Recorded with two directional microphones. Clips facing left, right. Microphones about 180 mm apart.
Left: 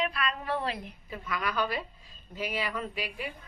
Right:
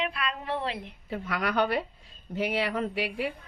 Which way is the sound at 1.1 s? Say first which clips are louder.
Right 4 dB; 65° right (ahead or behind).